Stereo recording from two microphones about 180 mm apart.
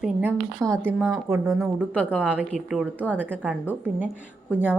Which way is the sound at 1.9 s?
10° left (ahead or behind).